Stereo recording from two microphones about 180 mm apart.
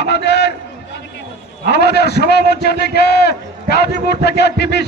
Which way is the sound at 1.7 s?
65° left (ahead or behind).